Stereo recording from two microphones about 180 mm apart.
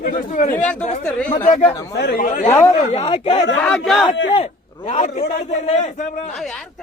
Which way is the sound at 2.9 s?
30° left (ahead or behind).